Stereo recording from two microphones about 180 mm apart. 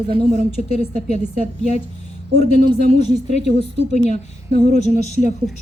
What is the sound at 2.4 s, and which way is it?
A woman's voice, 40° left (ahead or behind).